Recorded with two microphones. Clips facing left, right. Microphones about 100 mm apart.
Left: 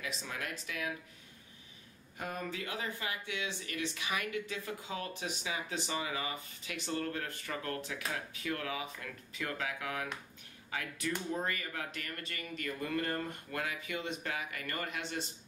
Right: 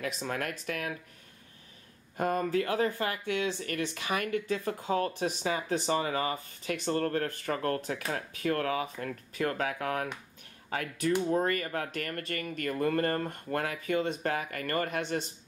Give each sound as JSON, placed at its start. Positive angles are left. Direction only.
{"t": 0.0, "sound": "speech", "side_deg": -50}
{"t": 2.1, "sound": "speech", "side_deg": -50}